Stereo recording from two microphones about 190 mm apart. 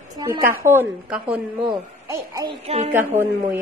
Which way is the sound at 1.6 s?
20° right (ahead or behind).